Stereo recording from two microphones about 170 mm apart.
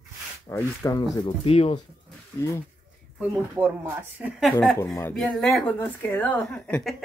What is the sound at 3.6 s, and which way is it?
Speech, 10° right (ahead or behind).